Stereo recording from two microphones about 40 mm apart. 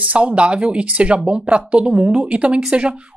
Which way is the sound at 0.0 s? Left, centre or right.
Right.